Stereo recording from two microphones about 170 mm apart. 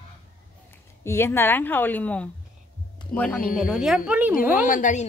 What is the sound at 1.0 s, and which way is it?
A woman's voice, 15° left (ahead or behind).